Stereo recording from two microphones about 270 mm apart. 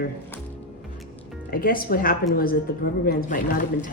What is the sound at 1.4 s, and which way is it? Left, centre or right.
A woman's voice, left.